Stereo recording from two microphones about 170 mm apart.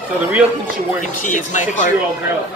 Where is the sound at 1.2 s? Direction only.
45° left (ahead or behind).